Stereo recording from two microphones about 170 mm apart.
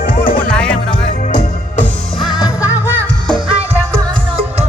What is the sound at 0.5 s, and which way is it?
Music, 5° left (ahead or behind).